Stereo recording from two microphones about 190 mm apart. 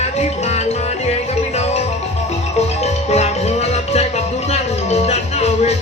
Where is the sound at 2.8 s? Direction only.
35° left (ahead or behind).